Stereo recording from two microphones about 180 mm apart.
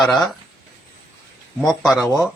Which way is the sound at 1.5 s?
Centre (ahead or behind).